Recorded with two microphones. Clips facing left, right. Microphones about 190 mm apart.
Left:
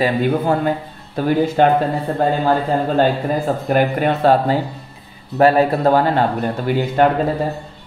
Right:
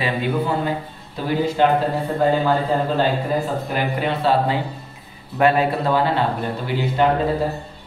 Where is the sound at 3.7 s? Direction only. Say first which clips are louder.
Left 9 dB; 50° left (ahead or behind).